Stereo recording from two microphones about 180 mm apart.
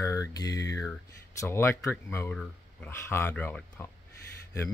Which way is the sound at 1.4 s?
15° left (ahead or behind).